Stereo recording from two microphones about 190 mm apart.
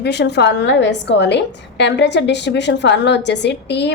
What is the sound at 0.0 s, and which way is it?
A woman's voice, 60° left (ahead or behind).